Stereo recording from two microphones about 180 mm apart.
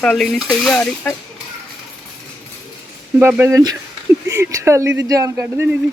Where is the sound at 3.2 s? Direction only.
10° right (ahead or behind).